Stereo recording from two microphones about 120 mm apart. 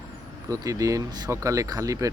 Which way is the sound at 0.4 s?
30° right (ahead or behind).